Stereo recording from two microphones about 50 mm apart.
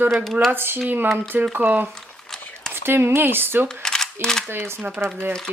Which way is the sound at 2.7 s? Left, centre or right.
Right.